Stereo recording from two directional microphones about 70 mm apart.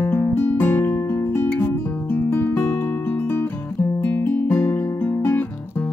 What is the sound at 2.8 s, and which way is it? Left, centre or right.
Music, left.